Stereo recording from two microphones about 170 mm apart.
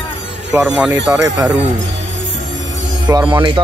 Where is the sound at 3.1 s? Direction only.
25° right (ahead or behind).